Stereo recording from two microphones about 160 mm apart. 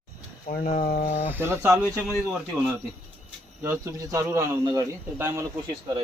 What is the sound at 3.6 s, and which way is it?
Speech, 20° right (ahead or behind).